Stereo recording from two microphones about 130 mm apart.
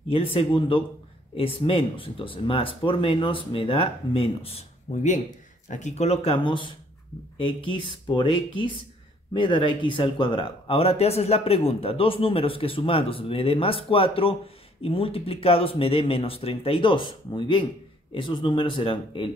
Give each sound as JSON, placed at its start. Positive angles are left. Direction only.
{"t": 0.1, "sound": "speech", "side_deg": 45}